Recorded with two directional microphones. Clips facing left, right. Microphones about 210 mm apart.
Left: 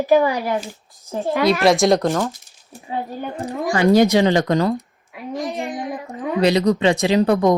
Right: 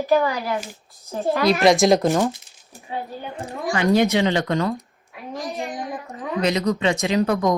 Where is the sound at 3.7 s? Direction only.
40° left (ahead or behind).